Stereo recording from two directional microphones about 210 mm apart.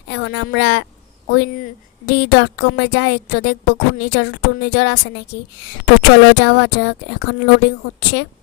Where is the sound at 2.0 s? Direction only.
50° left (ahead or behind).